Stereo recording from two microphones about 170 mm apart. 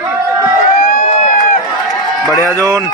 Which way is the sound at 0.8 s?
50° left (ahead or behind).